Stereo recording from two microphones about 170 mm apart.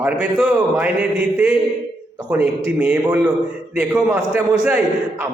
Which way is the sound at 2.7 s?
10° right (ahead or behind).